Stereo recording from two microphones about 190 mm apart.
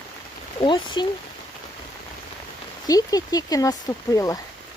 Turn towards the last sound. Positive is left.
turn(degrees=15)  # may be behind; listen again after turning